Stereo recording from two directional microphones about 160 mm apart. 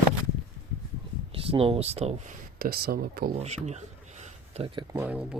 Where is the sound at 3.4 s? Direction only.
45° right (ahead or behind).